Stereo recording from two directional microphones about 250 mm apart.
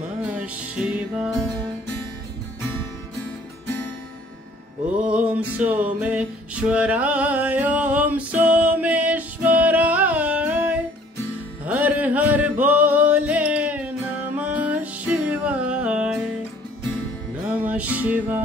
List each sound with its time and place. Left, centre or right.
0.4 s music: centre
4.9 s music: centre
17.6 s music: centre